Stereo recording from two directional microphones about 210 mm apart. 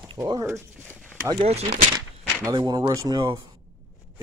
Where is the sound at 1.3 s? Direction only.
30° right (ahead or behind).